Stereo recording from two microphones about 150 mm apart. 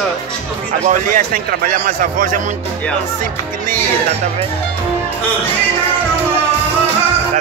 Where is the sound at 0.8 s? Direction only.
65° right (ahead or behind).